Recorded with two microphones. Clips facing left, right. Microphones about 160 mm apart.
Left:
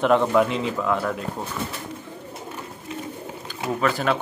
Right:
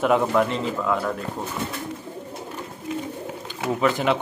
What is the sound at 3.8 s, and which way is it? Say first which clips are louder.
Speech: right 1 dB; 20° right (ahead or behind).